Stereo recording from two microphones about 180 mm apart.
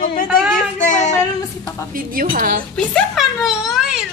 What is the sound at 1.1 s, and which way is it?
Child singing, 15° left (ahead or behind).